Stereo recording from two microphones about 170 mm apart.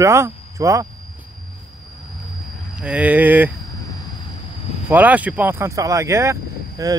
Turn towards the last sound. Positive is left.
turn(degrees=-20)  # may be behind; listen again after turning